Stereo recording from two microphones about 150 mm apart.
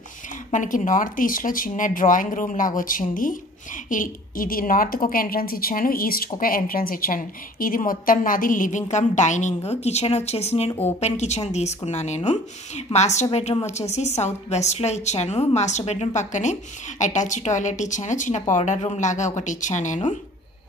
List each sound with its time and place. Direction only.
0.5 s a woman's voice: 60° left (ahead or behind)
18.6 s a woman's voice: 45° left (ahead or behind)